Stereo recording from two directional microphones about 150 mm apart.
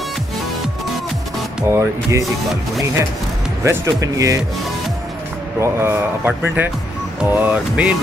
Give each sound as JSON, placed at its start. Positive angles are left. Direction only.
{"t": 1.7, "sound": "speech", "side_deg": -20}
{"t": 3.6, "sound": "speech", "side_deg": -20}
{"t": 5.6, "sound": "speech", "side_deg": -15}